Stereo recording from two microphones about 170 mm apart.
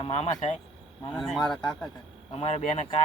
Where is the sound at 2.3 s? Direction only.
40° left (ahead or behind).